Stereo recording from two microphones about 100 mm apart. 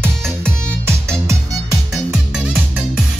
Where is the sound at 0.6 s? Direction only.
25° right (ahead or behind).